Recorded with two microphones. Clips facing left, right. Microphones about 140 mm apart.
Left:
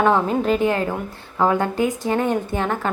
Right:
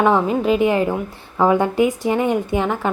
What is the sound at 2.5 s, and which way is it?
Speech, 10° right (ahead or behind).